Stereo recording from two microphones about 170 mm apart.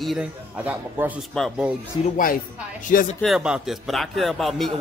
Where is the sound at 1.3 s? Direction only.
Centre (ahead or behind).